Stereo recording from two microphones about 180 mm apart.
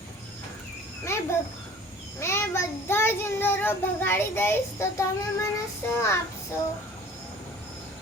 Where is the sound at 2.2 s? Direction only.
15° left (ahead or behind).